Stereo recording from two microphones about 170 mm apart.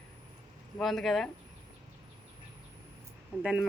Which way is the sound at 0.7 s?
Centre (ahead or behind).